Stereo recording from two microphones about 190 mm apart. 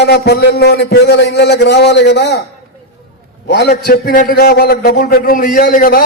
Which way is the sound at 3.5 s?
60° left (ahead or behind).